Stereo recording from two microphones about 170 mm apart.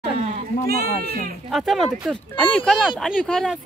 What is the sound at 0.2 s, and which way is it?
Goat, 45° right (ahead or behind).